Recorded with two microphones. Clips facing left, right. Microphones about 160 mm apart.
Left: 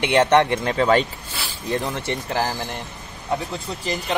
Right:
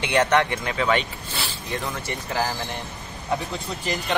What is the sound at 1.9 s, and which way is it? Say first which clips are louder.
Speech: left 4 dB; 25° left (ahead or behind).